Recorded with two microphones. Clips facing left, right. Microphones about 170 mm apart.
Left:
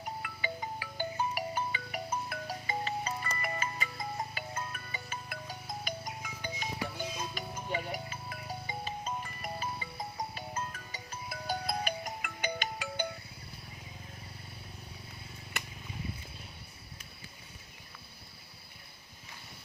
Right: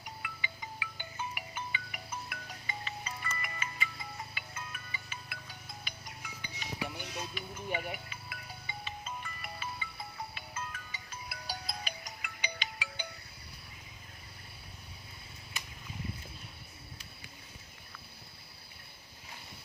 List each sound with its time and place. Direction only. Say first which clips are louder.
0.2 s music: left 7 dB; 45° left (ahead or behind)